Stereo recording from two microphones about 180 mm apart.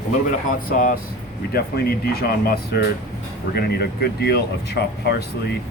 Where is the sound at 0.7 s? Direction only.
50° left (ahead or behind).